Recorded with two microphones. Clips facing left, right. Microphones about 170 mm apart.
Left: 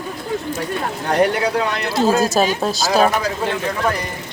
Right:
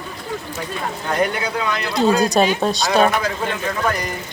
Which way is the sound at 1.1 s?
70° left (ahead or behind).